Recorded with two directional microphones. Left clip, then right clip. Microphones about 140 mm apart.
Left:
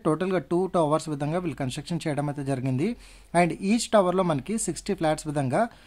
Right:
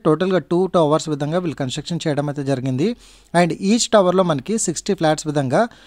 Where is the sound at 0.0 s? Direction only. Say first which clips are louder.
Right 8 dB; 35° right (ahead or behind).